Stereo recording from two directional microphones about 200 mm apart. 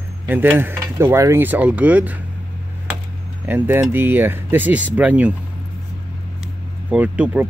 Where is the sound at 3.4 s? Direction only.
10° right (ahead or behind).